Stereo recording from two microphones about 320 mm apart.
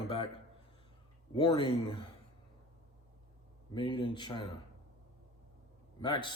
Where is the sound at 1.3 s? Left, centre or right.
Centre.